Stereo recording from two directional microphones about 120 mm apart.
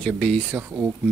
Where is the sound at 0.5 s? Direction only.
15° right (ahead or behind).